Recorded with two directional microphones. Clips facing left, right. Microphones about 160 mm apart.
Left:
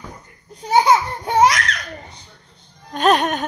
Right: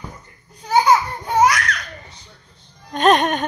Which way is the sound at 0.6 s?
20° left (ahead or behind).